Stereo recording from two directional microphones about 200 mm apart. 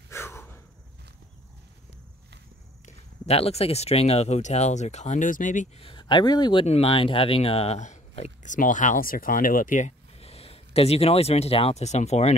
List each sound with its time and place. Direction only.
0.1 s gasp: 15° left (ahead or behind)
3.3 s speech: 30° left (ahead or behind)
5.9 s speech: 25° left (ahead or behind)